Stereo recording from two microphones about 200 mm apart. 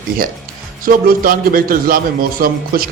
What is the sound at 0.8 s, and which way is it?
A man's voice, 45° right (ahead or behind).